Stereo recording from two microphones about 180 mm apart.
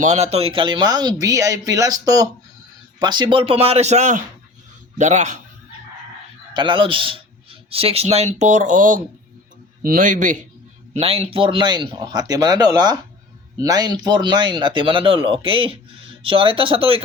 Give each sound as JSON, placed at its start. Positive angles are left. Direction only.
{"t": 0.0, "sound": "speech", "side_deg": -35}
{"t": 6.5, "sound": "speech", "side_deg": -25}
{"t": 10.9, "sound": "speech", "side_deg": -35}